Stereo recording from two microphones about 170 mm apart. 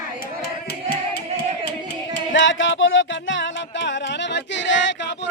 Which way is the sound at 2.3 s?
90° left.